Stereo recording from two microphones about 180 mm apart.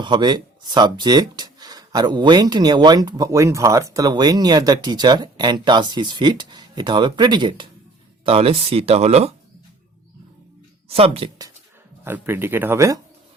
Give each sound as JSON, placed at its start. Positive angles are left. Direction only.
{"t": 0.0, "sound": "speech", "side_deg": -25}
{"t": 10.8, "sound": "speech", "side_deg": -35}
{"t": 12.0, "sound": "speech", "side_deg": -10}